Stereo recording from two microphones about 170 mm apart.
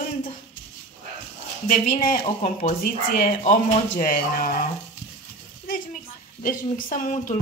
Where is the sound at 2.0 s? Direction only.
50° left (ahead or behind).